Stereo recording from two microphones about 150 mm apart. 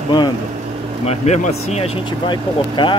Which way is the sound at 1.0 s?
50° left (ahead or behind).